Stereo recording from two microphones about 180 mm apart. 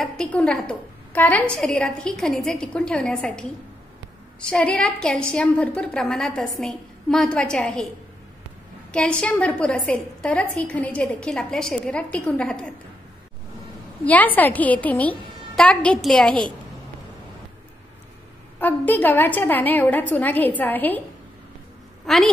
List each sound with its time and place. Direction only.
0.0 s a woman's voice: 5° left (ahead or behind)
8.9 s a woman's voice: 5° left (ahead or behind)
14.0 s a woman's voice: 10° left (ahead or behind)
18.6 s a woman's voice: 10° left (ahead or behind)
22.0 s a woman's voice: centre (ahead or behind)